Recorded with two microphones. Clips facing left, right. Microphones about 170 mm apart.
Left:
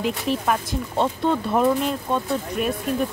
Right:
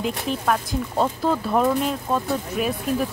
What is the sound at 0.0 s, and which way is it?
Speech, centre (ahead or behind).